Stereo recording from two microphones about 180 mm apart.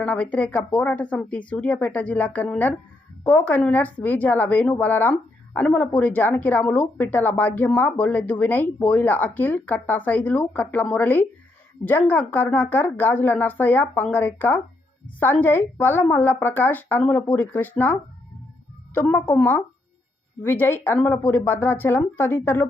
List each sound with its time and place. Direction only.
0.0 s speech: 10° left (ahead or behind)